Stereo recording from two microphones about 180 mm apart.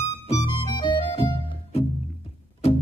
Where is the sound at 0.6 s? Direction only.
25° left (ahead or behind).